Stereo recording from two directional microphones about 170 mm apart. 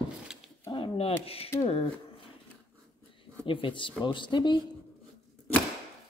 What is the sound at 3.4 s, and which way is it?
Speech, 30° left (ahead or behind).